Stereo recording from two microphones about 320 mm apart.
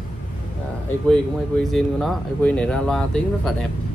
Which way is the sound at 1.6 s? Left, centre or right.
Centre.